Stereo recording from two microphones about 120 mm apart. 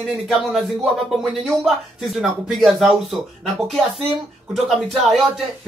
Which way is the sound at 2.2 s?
5° right (ahead or behind).